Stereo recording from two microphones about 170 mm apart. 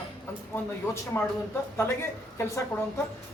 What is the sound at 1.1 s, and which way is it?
Speech, 15° left (ahead or behind).